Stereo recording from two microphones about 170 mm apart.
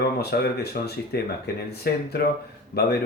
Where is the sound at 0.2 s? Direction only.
70° left (ahead or behind).